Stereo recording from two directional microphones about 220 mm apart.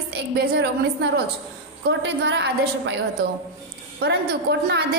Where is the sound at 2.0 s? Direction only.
50° right (ahead or behind).